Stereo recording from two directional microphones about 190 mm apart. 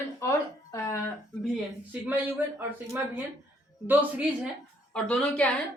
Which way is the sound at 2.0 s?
10° right (ahead or behind).